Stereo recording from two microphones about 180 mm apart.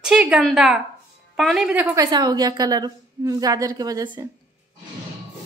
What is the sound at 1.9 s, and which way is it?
A woman's voice, 20° right (ahead or behind).